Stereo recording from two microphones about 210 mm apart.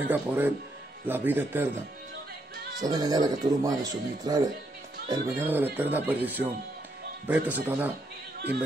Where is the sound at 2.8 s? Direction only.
20° right (ahead or behind).